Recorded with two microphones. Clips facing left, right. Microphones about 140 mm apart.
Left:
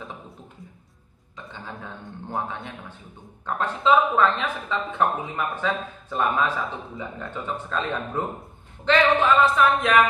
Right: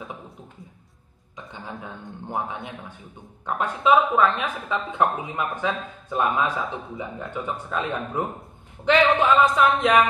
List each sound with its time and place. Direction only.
1.3 s speech: 20° right (ahead or behind)